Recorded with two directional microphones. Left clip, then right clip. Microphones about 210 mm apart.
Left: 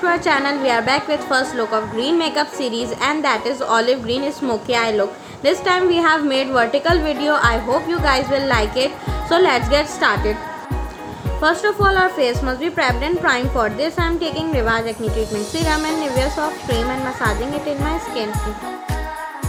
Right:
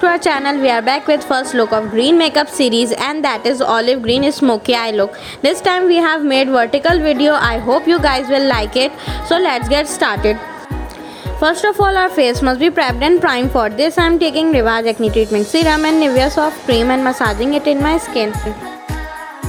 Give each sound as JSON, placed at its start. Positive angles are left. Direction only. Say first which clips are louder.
{"t": 0.0, "sound": "a woman's voice", "louder": "right 3 dB", "side_deg": -40}
{"t": 11.3, "sound": "a woman's voice", "louder": "right 4 dB", "side_deg": -35}
{"t": 15.2, "sound": "speech", "louder": "right 8 dB", "side_deg": 0}
{"t": 15.7, "sound": "a woman's voice", "louder": "right 5 dB", "side_deg": -40}